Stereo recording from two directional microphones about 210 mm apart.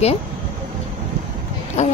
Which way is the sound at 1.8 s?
35° left (ahead or behind).